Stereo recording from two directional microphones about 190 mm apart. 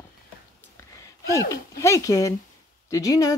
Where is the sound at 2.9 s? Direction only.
20° left (ahead or behind).